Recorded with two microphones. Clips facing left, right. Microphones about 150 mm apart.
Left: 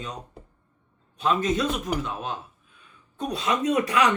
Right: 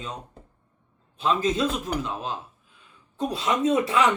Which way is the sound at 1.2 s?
30° right (ahead or behind).